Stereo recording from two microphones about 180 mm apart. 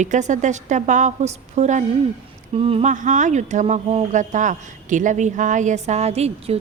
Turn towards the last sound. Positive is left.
turn(degrees=-35)  # may be behind; listen again after turning